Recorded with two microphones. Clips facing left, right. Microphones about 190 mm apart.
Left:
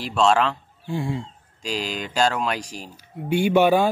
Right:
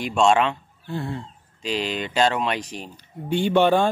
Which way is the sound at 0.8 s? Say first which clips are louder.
Left 3 dB; 15° left (ahead or behind).